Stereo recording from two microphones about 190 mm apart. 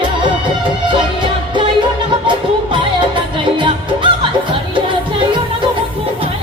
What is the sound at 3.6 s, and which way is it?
Music, 25° right (ahead or behind).